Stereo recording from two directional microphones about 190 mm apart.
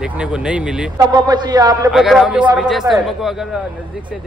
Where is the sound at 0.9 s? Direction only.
20° right (ahead or behind).